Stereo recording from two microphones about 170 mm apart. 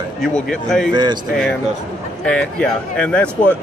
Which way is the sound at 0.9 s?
25° right (ahead or behind).